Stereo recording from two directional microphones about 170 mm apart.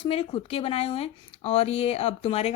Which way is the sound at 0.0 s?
30° left (ahead or behind).